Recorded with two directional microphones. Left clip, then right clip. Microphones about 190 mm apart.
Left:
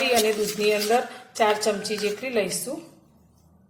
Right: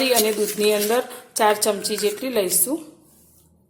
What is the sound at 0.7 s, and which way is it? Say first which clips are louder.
A woman's voice: right 1 dB; 40° right (ahead or behind).